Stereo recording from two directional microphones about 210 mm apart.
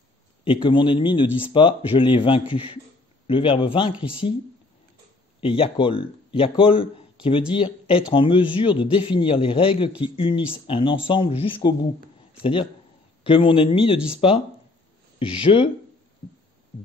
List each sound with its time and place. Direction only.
0.4 s speech: 25° left (ahead or behind)
5.4 s speech: 25° left (ahead or behind)
13.2 s speech: 25° left (ahead or behind)